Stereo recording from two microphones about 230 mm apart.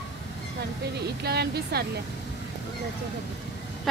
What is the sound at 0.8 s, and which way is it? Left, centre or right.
Speech, right.